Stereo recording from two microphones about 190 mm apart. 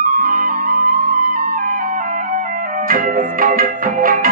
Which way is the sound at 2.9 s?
45° right (ahead or behind).